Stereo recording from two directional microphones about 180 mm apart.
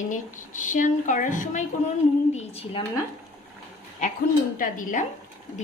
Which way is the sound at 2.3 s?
35° left (ahead or behind).